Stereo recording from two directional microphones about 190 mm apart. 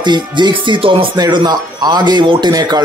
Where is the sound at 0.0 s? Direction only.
25° right (ahead or behind).